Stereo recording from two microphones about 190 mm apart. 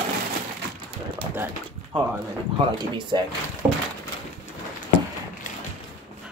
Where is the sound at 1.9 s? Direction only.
30° right (ahead or behind).